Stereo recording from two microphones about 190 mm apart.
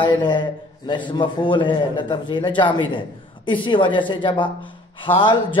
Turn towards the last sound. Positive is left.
turn(degrees=25)  # may be behind; listen again after turning